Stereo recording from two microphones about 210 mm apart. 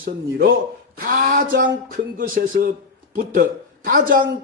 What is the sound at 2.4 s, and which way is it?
Speech, 40° right (ahead or behind).